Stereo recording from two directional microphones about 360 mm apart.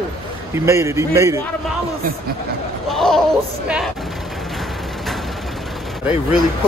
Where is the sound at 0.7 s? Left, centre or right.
Centre.